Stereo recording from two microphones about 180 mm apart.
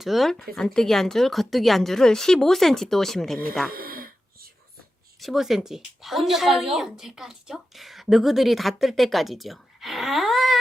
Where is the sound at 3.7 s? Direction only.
55° right (ahead or behind).